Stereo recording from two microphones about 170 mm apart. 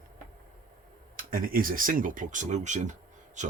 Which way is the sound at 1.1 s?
55° right (ahead or behind).